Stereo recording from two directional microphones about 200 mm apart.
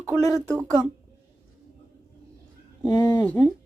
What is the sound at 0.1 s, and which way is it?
Speech, 15° right (ahead or behind).